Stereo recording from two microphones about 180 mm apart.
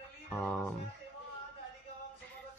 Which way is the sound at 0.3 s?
5° left (ahead or behind).